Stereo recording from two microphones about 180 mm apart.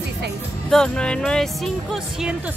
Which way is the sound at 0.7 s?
5° left (ahead or behind).